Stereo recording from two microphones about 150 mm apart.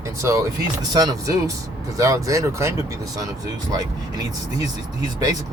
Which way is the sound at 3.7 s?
25° right (ahead or behind).